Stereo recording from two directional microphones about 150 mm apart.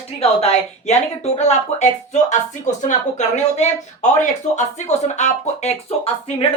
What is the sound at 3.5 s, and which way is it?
Speech, 50° left (ahead or behind).